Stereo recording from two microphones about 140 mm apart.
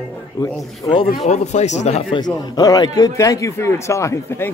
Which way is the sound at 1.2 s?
55° left (ahead or behind).